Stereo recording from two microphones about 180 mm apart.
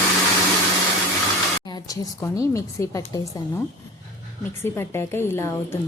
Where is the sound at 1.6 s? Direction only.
25° left (ahead or behind).